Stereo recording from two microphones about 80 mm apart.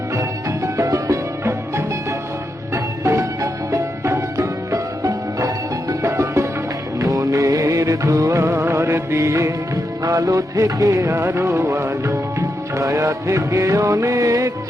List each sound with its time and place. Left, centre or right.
0.2 s music: right
7.0 s music of bollywood: right
10.0 s music: right